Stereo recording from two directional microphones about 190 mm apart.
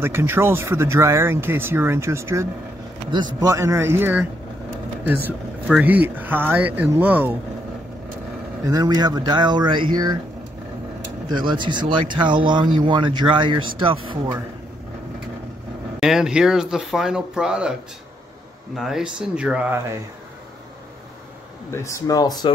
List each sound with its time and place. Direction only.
0.0 s speech: 10° right (ahead or behind)
8.6 s speech: 20° right (ahead or behind)
11.2 s speech: 25° right (ahead or behind)
16.0 s speech: 5° right (ahead or behind)
18.8 s speech: centre (ahead or behind)
21.6 s speech: 15° left (ahead or behind)